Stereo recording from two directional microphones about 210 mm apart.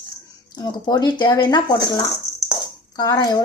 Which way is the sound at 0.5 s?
20° left (ahead or behind).